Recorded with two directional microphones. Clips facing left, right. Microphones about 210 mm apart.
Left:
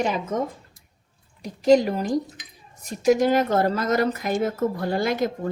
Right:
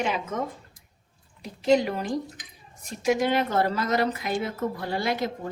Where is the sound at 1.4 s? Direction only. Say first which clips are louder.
Left 4 dB; 40° left (ahead or behind).